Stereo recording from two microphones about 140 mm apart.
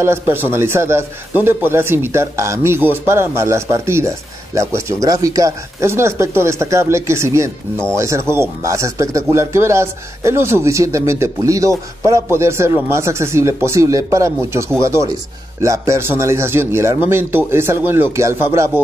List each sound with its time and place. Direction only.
0.0 s a man's voice: 15° right (ahead or behind)